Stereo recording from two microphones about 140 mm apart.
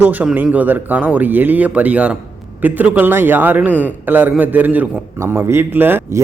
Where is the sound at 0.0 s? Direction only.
10° right (ahead or behind).